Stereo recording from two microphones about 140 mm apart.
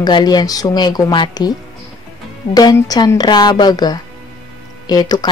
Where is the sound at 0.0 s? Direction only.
30° left (ahead or behind).